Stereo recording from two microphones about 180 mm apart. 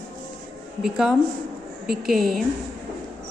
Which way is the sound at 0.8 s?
5° right (ahead or behind).